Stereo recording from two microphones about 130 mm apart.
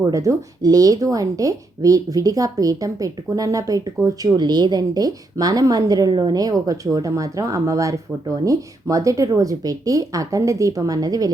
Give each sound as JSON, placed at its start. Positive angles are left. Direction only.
{"t": 0.0, "sound": "a woman's voice", "side_deg": -25}